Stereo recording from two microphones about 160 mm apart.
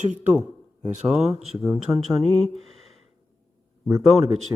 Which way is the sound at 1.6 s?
15° right (ahead or behind).